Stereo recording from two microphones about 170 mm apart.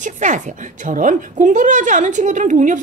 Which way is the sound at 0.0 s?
45° right (ahead or behind).